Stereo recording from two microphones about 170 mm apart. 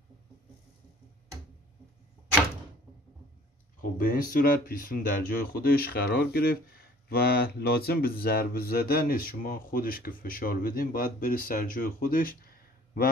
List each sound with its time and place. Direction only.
4.0 s speech: 55° left (ahead or behind)